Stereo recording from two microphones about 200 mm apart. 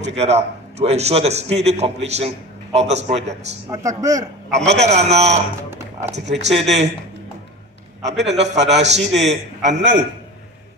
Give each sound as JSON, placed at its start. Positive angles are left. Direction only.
{"t": 0.0, "sound": "a man's voice", "side_deg": -35}
{"t": 3.7, "sound": "a man's voice", "side_deg": -15}
{"t": 4.5, "sound": "a man's voice", "side_deg": -35}
{"t": 5.6, "sound": "a sound", "side_deg": -15}
{"t": 6.0, "sound": "a man's voice", "side_deg": -35}
{"t": 8.0, "sound": "a man's voice", "side_deg": -35}